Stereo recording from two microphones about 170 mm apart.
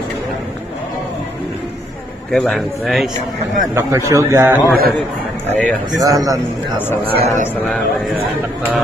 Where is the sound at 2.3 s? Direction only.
Centre (ahead or behind).